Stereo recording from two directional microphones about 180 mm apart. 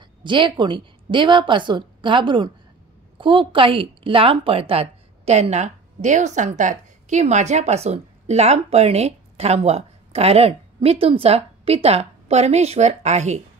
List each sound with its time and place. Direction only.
0.2 s a woman's voice: 25° right (ahead or behind)